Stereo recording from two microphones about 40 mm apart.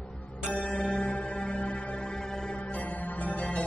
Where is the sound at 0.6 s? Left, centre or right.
Centre.